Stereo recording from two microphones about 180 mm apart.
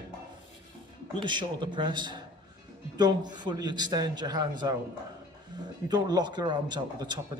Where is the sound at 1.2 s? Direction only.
25° right (ahead or behind).